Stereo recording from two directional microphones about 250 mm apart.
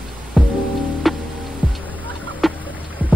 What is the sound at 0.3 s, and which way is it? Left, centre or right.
Music, centre.